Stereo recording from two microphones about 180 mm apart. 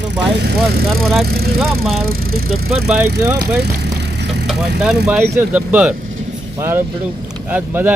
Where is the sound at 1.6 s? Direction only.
Centre (ahead or behind).